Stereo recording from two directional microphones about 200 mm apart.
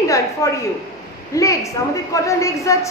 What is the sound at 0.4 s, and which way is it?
A woman's voice, 15° left (ahead or behind).